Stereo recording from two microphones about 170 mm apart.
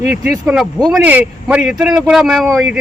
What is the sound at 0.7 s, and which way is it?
Speech, centre (ahead or behind).